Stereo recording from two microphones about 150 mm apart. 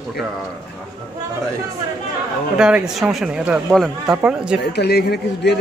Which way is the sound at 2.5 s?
5° right (ahead or behind).